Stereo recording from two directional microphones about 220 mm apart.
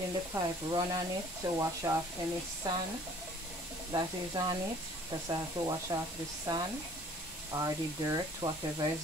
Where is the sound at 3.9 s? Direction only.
20° right (ahead or behind).